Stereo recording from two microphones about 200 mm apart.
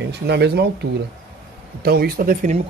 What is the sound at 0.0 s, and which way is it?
Speech, 55° right (ahead or behind).